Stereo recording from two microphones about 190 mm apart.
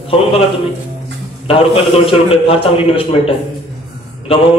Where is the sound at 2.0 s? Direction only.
30° left (ahead or behind).